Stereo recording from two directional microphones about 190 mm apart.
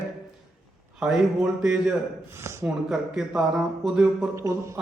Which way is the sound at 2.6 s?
Centre (ahead or behind).